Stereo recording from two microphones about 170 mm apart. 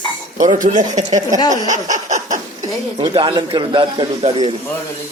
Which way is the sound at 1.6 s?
45° right (ahead or behind).